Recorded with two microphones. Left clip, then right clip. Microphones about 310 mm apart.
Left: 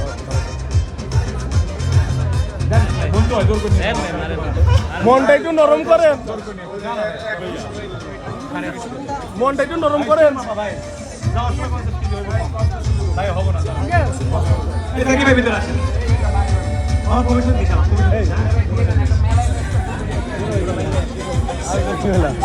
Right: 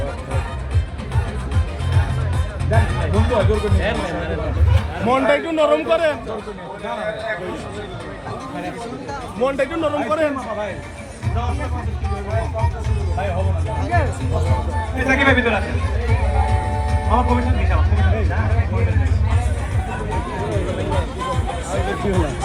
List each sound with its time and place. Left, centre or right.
2.7 s music: centre
5.0 s a man's voice: left
9.4 s a man's voice: left
15.1 s a man's voice: right
17.1 s a man's voice: centre
20.9 s music: centre